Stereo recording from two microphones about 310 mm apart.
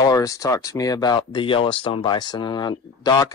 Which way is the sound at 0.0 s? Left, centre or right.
Centre.